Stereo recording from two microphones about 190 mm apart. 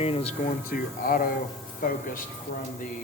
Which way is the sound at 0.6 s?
45° left (ahead or behind).